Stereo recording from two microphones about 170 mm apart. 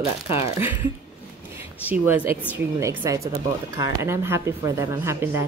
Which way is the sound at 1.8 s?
10° right (ahead or behind).